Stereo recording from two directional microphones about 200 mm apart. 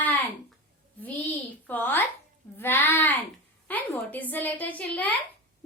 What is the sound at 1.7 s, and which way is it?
A child's voice, 10° left (ahead or behind).